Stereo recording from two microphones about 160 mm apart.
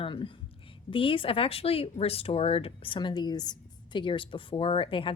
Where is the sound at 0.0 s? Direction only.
30° left (ahead or behind).